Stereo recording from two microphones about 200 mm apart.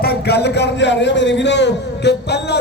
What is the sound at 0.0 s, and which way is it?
A man's voice, 50° left (ahead or behind).